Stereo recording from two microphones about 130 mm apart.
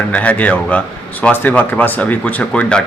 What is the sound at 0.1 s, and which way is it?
Speech, 10° left (ahead or behind).